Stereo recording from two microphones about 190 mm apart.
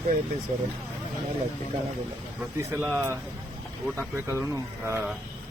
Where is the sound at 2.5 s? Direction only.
15° right (ahead or behind).